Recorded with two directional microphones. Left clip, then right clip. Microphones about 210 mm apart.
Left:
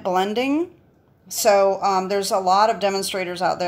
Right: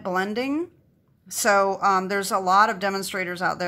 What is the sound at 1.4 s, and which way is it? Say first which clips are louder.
Speech: left 3 dB; 20° right (ahead or behind).